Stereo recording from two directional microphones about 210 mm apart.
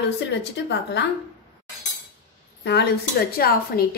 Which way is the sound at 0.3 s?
55° left (ahead or behind).